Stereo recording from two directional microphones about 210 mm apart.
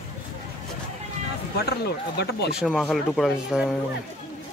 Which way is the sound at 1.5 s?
50° left (ahead or behind).